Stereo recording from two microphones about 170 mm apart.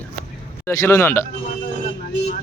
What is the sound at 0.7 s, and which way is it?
Speech, 15° left (ahead or behind).